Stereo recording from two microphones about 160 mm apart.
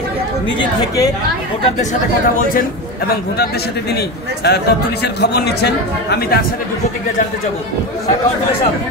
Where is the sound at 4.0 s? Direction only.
90° left.